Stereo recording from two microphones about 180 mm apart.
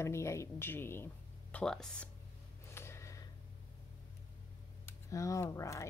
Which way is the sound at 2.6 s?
15° left (ahead or behind).